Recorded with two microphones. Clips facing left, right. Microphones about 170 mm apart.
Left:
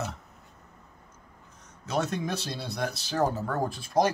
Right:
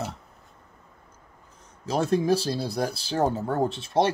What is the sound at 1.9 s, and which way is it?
Speech, 30° right (ahead or behind).